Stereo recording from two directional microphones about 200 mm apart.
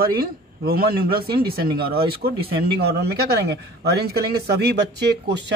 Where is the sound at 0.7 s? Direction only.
50° right (ahead or behind).